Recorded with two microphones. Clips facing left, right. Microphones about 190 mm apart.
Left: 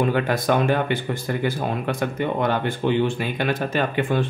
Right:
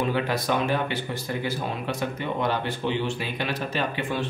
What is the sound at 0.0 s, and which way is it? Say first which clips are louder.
Speech: left 4 dB; 50° left (ahead or behind).